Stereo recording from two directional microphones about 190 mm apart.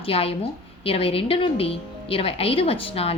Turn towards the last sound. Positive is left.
turn(degrees=30)  # may be behind; listen again after turning